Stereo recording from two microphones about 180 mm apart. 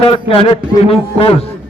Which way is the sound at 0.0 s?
30° left (ahead or behind).